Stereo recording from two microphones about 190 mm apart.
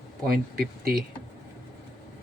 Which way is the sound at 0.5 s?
55° right (ahead or behind).